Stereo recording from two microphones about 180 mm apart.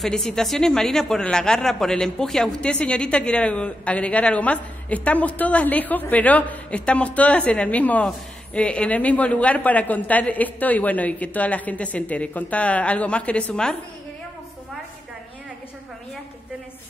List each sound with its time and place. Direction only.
0.0 s speech: centre (ahead or behind)